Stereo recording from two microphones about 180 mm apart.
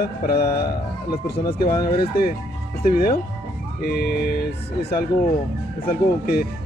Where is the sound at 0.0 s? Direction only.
60° left (ahead or behind).